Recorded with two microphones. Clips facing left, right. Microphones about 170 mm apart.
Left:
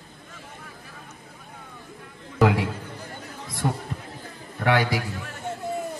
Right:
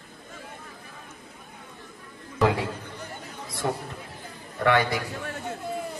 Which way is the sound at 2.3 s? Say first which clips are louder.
Left 3 dB; 70° left (ahead or behind).